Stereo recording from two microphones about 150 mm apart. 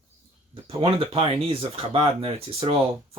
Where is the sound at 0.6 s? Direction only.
40° right (ahead or behind).